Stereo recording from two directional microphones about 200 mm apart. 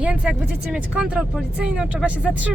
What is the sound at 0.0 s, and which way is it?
Speech, 5° right (ahead or behind).